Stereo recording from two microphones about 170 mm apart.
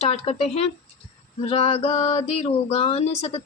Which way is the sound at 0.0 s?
35° left (ahead or behind).